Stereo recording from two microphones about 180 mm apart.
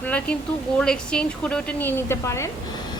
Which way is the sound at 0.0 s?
5° left (ahead or behind).